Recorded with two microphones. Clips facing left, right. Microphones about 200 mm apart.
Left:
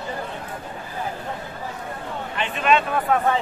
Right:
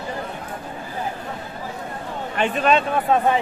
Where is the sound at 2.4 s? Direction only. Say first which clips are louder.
Right 2 dB; 40° right (ahead or behind).